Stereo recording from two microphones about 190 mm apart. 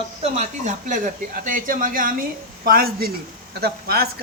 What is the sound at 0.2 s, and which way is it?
A woman's voice, 40° right (ahead or behind).